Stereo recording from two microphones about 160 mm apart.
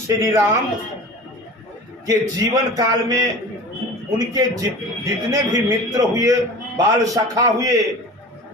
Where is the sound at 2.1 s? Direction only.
25° right (ahead or behind).